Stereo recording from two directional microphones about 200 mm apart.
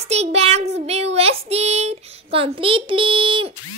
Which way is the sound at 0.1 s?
30° right (ahead or behind).